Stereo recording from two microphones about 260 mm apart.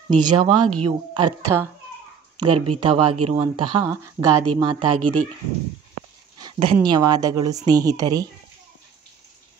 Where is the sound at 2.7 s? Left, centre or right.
Centre.